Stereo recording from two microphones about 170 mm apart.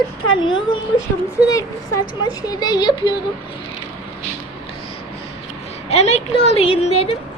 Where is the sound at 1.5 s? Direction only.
20° left (ahead or behind).